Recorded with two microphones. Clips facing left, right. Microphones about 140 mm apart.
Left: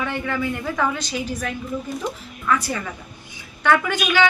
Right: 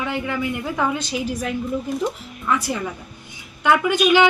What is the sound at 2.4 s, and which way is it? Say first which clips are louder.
Speech: even; 20° right (ahead or behind).